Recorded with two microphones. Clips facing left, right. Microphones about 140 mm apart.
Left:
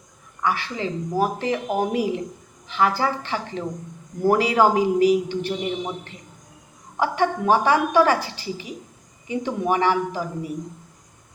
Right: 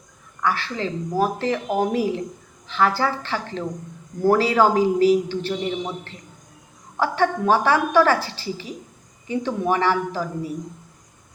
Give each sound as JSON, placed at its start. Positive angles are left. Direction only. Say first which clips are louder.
{"t": 0.4, "sound": "a woman's voice", "louder": "right 1 dB", "side_deg": 15}
{"t": 6.9, "sound": "a woman's voice", "louder": "right 1 dB", "side_deg": 15}